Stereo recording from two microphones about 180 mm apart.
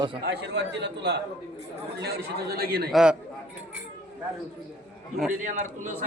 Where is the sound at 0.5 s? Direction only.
70° right (ahead or behind).